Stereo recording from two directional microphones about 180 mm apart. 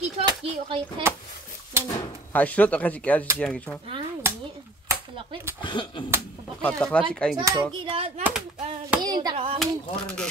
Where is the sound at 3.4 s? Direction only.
5° left (ahead or behind).